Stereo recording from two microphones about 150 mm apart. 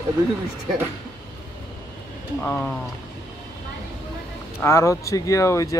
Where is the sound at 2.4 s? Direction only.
10° left (ahead or behind).